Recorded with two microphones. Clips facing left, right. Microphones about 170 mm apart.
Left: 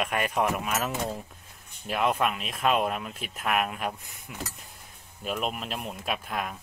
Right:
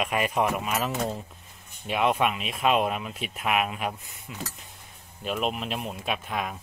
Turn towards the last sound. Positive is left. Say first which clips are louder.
# right 1 dB
turn(degrees=0)  # may be behind; listen again after turning